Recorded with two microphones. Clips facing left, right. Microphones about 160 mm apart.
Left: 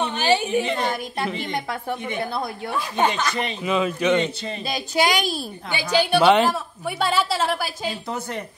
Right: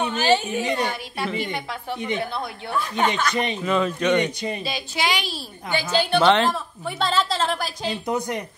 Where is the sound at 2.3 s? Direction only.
35° left (ahead or behind).